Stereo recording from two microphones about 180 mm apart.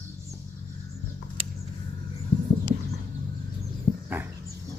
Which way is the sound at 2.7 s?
40° right (ahead or behind).